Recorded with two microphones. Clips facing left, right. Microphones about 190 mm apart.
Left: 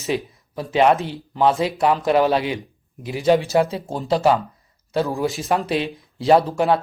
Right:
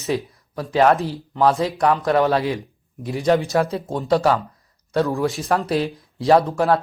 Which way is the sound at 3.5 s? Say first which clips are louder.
Left 1 dB; 20° left (ahead or behind).